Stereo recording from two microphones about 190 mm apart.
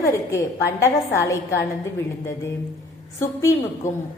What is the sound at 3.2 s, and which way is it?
Speech, 15° left (ahead or behind).